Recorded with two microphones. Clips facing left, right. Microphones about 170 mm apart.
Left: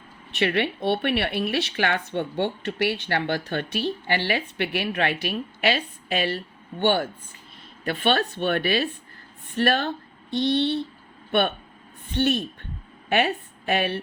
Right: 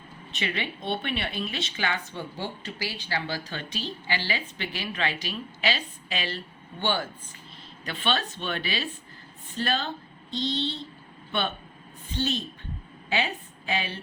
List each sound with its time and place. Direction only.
0.3 s a woman's voice: 65° left (ahead or behind)